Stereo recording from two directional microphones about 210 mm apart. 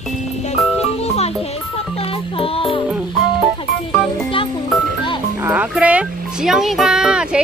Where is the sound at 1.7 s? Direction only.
25° left (ahead or behind).